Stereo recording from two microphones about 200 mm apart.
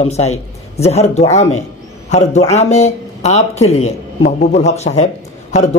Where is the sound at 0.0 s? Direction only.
30° left (ahead or behind).